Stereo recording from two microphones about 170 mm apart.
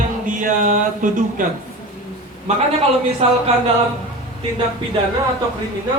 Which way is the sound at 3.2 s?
40° right (ahead or behind).